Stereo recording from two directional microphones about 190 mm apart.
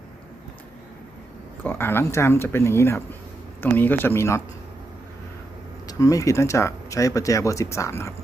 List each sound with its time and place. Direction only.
1.6 s speech: 10° left (ahead or behind)
5.9 s speech: 20° left (ahead or behind)